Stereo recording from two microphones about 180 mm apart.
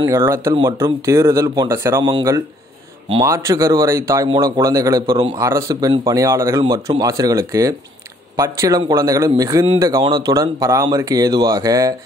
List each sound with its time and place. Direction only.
0.0 s speech: 15° right (ahead or behind)
3.2 s speech: 15° right (ahead or behind)